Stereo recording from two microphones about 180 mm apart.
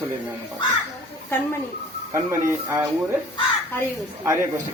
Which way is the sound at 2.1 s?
15° right (ahead or behind).